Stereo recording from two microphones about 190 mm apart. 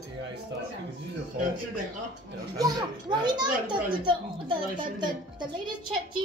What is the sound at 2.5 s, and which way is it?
A child's voice, 20° right (ahead or behind).